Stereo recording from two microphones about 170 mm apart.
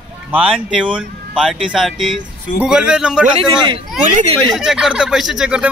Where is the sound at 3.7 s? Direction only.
35° right (ahead or behind).